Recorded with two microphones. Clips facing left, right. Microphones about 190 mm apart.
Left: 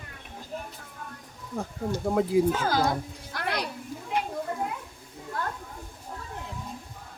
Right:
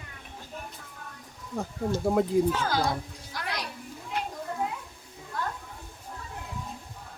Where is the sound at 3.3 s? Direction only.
60° left (ahead or behind).